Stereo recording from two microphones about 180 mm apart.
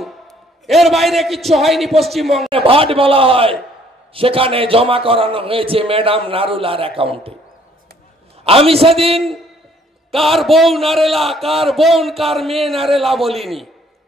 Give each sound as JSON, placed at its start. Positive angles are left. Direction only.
{"t": 0.7, "sound": "a man's voice", "side_deg": 0}
{"t": 2.5, "sound": "a man's voice", "side_deg": -30}
{"t": 8.5, "sound": "a man's voice", "side_deg": -30}
{"t": 10.1, "sound": "a man's voice", "side_deg": 0}